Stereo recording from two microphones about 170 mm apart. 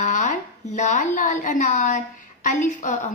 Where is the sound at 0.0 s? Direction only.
45° left (ahead or behind).